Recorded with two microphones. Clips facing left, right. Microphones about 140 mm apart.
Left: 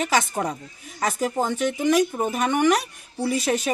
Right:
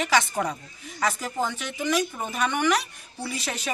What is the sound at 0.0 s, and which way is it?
Speech, 40° left (ahead or behind).